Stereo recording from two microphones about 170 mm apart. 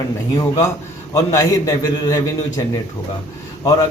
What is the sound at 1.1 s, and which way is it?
A man's voice, 20° left (ahead or behind).